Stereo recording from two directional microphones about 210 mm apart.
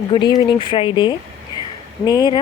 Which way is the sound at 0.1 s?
20° left (ahead or behind).